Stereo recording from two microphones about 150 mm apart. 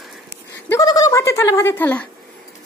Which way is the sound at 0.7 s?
25° left (ahead or behind).